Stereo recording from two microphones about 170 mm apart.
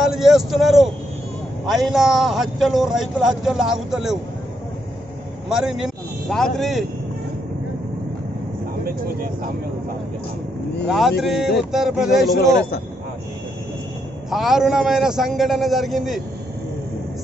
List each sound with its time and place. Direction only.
0.1 s speech: centre (ahead or behind)
5.5 s speech: 5° right (ahead or behind)
8.8 s speech: 65° right (ahead or behind)
10.9 s speech: centre (ahead or behind)
14.3 s speech: centre (ahead or behind)